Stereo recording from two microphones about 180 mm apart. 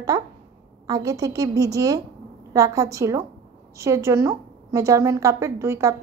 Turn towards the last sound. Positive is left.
turn(degrees=-15)  # may be behind; listen again after turning